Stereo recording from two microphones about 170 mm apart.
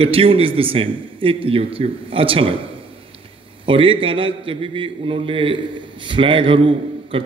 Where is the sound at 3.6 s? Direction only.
30° right (ahead or behind).